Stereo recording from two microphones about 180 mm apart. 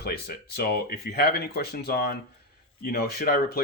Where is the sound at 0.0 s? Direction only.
60° left (ahead or behind).